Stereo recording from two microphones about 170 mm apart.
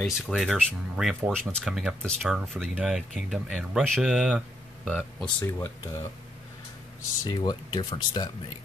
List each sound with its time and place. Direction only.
0.0 s speech: centre (ahead or behind)
7.2 s speech: 25° left (ahead or behind)